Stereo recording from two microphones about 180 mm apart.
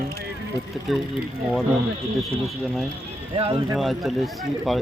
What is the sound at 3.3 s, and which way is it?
Speech, 30° right (ahead or behind).